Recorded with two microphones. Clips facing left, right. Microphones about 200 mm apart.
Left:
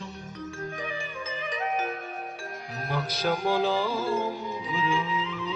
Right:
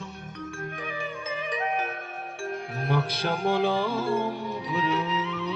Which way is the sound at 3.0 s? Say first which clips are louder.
Even; 60° right (ahead or behind).